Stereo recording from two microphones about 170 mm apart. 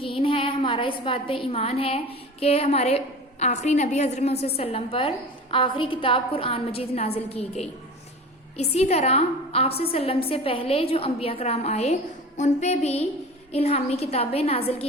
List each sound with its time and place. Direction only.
0.0 s a woman's voice: 30° left (ahead or behind)